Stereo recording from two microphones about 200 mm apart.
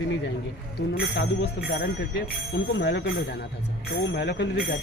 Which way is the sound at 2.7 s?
60° left (ahead or behind).